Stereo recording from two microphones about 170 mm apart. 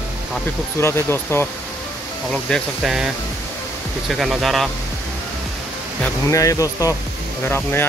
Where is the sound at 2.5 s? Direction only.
Centre (ahead or behind).